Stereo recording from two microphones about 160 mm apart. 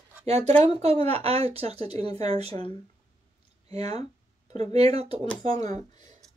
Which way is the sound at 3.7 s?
40° right (ahead or behind).